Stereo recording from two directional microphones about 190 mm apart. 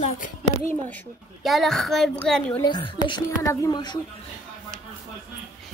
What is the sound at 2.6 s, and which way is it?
A woman's voice, 25° left (ahead or behind).